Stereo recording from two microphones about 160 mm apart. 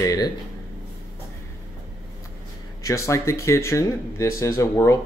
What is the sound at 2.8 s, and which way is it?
Speech, 20° left (ahead or behind).